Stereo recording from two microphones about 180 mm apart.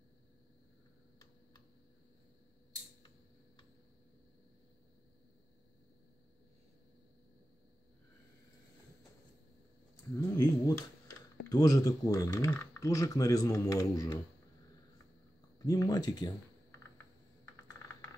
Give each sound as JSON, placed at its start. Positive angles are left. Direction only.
{"t": 10.3, "sound": "a sound", "side_deg": 20}
{"t": 11.4, "sound": "speech", "side_deg": 20}
{"t": 15.6, "sound": "speech", "side_deg": 20}